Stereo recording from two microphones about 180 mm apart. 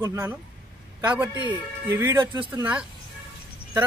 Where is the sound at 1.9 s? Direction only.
15° right (ahead or behind).